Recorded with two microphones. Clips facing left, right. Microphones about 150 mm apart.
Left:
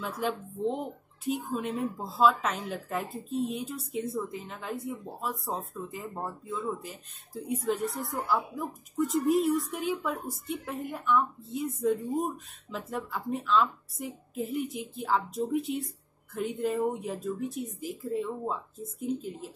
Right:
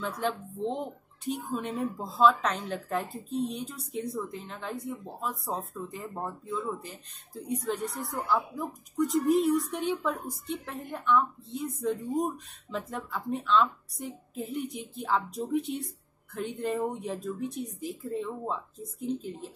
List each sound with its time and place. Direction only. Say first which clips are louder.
0.0 s speech: even; 5° left (ahead or behind)